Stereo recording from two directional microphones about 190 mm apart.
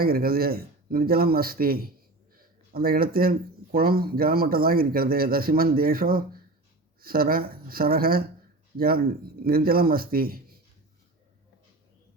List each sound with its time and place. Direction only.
0.0 s speech: 50° right (ahead or behind)